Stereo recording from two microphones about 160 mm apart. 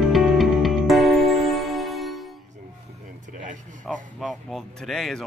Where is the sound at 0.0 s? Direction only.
Centre (ahead or behind).